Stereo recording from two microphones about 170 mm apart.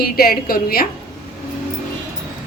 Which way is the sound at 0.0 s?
60° left (ahead or behind).